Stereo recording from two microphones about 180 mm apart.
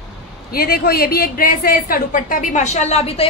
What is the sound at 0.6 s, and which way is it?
A woman's voice, 55° left (ahead or behind).